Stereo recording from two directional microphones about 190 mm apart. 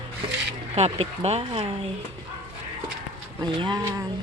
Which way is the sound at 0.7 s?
30° right (ahead or behind).